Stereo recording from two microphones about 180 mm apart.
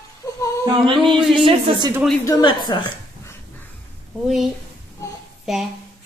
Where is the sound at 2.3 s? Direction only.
25° left (ahead or behind).